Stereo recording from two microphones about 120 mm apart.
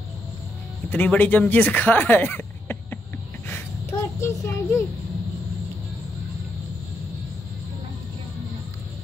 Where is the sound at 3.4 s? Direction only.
20° left (ahead or behind).